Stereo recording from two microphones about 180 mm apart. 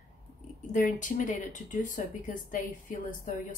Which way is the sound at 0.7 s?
45° left (ahead or behind).